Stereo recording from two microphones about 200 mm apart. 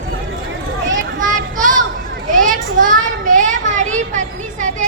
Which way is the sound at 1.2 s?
40° right (ahead or behind).